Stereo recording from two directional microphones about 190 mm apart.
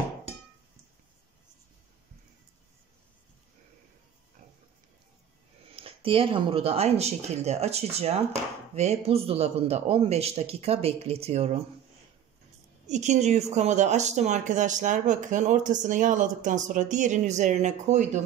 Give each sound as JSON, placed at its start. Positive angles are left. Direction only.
{"t": 5.7, "sound": "speech", "side_deg": -30}
{"t": 12.8, "sound": "speech", "side_deg": -40}